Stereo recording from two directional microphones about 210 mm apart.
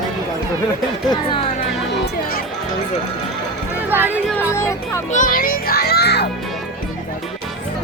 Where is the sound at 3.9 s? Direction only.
10° right (ahead or behind).